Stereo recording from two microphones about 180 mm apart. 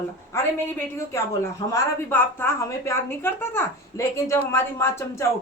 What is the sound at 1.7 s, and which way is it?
A woman's voice, 10° left (ahead or behind).